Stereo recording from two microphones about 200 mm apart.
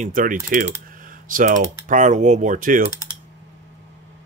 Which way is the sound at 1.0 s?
40° right (ahead or behind).